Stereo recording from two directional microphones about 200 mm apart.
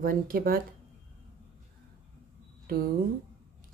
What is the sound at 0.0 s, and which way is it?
Speech, 45° right (ahead or behind).